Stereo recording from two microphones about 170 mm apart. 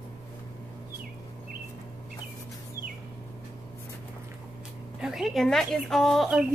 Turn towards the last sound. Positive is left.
turn(degrees=0)  # may be behind; listen again after turning